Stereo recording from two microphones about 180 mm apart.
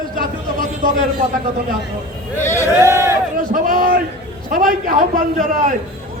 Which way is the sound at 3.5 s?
50° right (ahead or behind).